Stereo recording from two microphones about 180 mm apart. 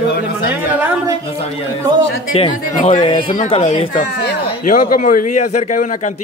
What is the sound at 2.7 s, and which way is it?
Speech, 45° left (ahead or behind).